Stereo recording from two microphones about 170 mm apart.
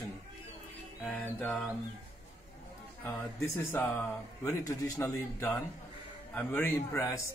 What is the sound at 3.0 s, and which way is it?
Speech, 10° left (ahead or behind).